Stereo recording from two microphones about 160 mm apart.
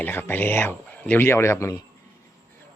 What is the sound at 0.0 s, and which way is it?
A man's voice, 15° left (ahead or behind).